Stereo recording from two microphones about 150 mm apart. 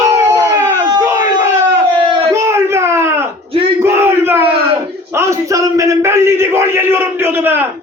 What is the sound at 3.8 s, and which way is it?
Battle cry, 15° right (ahead or behind).